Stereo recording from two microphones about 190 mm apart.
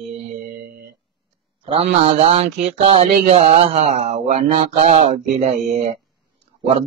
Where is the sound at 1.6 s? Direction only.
30° right (ahead or behind).